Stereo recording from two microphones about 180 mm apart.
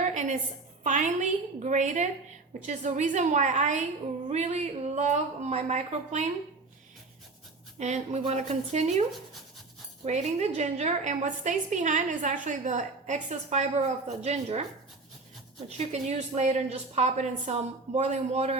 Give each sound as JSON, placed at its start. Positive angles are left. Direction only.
{"t": 0.1, "sound": "a sound", "side_deg": -45}
{"t": 0.9, "sound": "a woman's voice", "side_deg": -40}
{"t": 7.8, "sound": "a woman's voice", "side_deg": -40}
{"t": 10.1, "sound": "a woman's voice", "side_deg": -40}
{"t": 15.8, "sound": "a woman's voice", "side_deg": -40}